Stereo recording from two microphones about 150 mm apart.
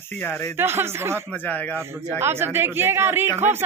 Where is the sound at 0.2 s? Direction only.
15° left (ahead or behind).